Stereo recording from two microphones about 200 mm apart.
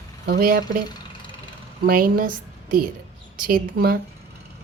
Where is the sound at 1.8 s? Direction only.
45° right (ahead or behind).